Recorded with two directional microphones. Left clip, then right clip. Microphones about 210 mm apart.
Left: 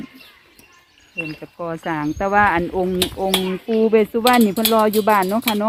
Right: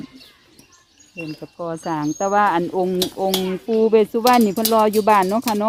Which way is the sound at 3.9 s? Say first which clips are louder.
Even; 15° right (ahead or behind).